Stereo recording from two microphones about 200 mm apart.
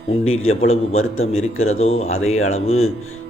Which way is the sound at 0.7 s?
90° left.